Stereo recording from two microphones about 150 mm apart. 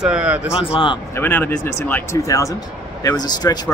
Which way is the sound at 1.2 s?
15° left (ahead or behind).